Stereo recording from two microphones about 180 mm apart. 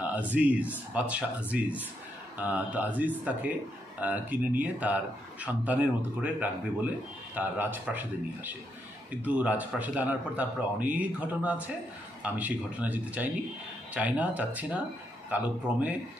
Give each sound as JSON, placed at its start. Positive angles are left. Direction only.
{"t": 0.3, "sound": "speech", "side_deg": -10}